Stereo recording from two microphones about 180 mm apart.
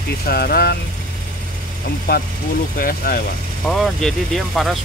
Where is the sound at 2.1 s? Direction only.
55° left (ahead or behind).